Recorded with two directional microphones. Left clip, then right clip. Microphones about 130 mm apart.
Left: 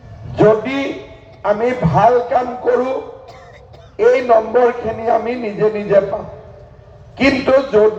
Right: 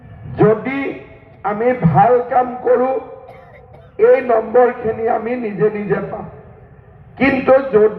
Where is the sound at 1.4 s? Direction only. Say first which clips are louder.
Left 1 dB; 50° left (ahead or behind).